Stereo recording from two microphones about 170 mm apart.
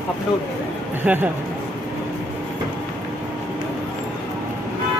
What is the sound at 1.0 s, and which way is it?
Speech, 10° right (ahead or behind).